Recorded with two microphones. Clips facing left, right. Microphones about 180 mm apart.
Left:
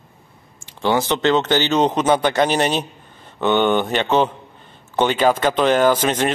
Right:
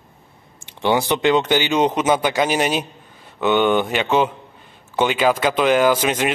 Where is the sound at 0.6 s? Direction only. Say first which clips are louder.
Even; 20° right (ahead or behind).